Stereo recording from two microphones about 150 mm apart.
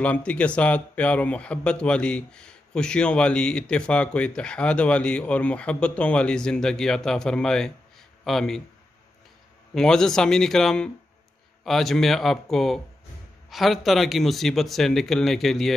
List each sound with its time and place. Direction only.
0.0 s speech: 10° left (ahead or behind)
9.8 s a man's voice: 5° left (ahead or behind)